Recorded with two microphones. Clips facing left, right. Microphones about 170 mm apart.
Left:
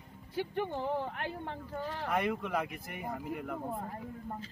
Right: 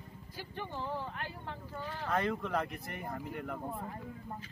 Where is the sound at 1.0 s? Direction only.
60° left (ahead or behind).